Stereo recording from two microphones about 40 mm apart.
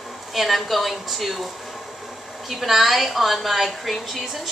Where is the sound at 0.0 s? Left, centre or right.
Centre.